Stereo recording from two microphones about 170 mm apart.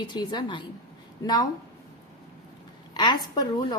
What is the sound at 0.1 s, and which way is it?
Speech, 25° left (ahead or behind).